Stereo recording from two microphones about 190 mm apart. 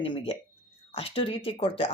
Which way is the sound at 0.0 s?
30° left (ahead or behind).